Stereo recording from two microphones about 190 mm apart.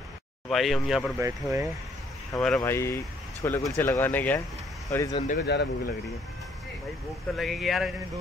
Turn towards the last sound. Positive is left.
turn(degrees=0)  # may be behind; listen again after turning